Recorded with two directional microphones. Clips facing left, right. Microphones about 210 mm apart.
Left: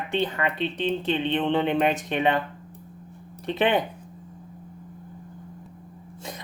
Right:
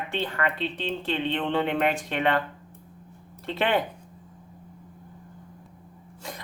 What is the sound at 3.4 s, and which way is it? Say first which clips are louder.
Speech: left 3 dB; 20° left (ahead or behind).